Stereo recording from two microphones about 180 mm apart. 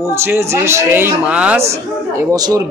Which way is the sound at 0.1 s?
15° right (ahead or behind).